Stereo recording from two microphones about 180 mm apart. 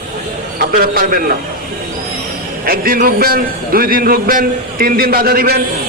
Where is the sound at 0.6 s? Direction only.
55° right (ahead or behind).